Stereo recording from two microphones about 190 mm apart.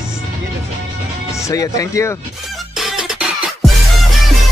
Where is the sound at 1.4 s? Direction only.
15° left (ahead or behind).